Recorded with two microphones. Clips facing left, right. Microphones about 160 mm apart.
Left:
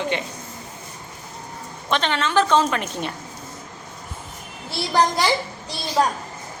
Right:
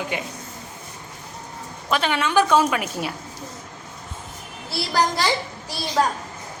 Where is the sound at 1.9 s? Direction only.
10° right (ahead or behind).